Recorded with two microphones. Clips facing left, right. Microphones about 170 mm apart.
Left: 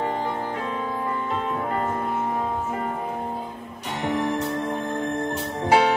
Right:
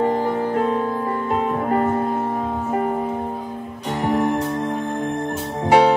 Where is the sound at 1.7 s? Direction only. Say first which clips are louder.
Right 9 dB; 45° right (ahead or behind).